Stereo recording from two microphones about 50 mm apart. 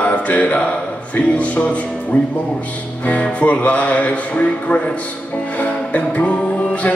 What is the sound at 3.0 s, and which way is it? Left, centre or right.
Speech, left.